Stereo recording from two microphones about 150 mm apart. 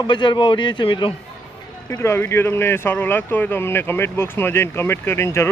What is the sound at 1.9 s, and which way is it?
A man's voice, 20° left (ahead or behind).